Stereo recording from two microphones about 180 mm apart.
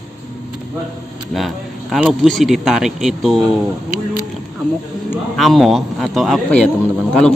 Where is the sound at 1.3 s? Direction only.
Centre (ahead or behind).